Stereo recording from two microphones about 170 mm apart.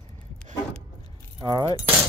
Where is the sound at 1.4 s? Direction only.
20° right (ahead or behind).